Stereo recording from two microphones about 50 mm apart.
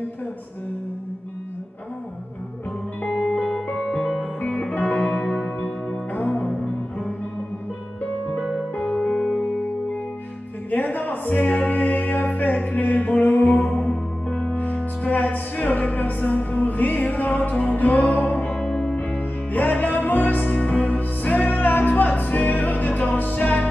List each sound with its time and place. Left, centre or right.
3.0 s music: left
3.5 s music: centre
4.4 s music: left
6.1 s music: left
8.4 s music: centre
8.7 s music: left
9.0 s music: centre
10.7 s music: left
18.9 s music: left